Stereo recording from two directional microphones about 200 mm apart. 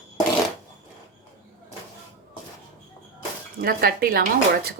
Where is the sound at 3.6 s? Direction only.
50° right (ahead or behind).